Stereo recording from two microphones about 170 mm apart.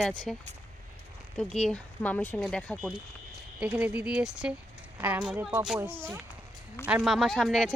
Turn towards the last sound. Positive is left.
turn(degrees=0)  # may be behind; listen again after turning